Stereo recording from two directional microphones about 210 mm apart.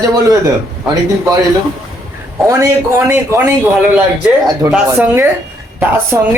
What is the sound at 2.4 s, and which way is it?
Speech, 15° right (ahead or behind).